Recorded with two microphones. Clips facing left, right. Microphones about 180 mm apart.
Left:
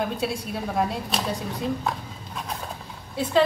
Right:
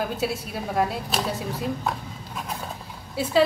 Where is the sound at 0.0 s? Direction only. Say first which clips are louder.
Even; 5° right (ahead or behind).